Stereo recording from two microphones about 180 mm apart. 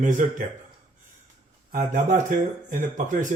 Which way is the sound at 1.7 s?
45° right (ahead or behind).